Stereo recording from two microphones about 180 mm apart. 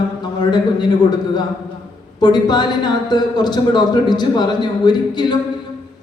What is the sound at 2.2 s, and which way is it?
A woman's voice, 25° left (ahead or behind).